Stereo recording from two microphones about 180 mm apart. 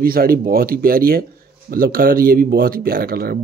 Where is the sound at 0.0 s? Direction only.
55° right (ahead or behind).